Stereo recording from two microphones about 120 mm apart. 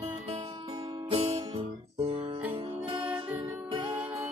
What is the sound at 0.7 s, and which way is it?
Music, 35° right (ahead or behind).